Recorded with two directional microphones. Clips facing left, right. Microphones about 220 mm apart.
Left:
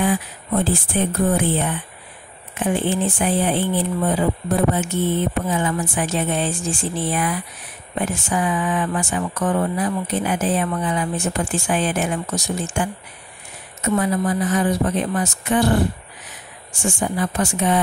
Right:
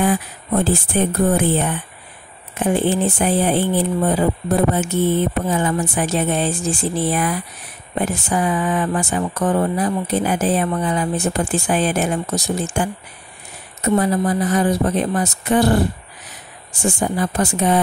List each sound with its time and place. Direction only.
0.0 s speech: 45° right (ahead or behind)
16.8 s speech: 40° right (ahead or behind)